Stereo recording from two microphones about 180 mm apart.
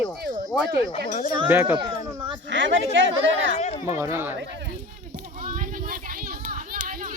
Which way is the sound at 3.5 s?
35° left (ahead or behind).